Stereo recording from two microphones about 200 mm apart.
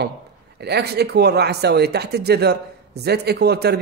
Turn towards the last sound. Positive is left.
turn(degrees=-55)  # may be behind; listen again after turning